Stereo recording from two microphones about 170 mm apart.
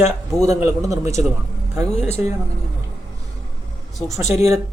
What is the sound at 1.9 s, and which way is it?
Speech, 40° left (ahead or behind).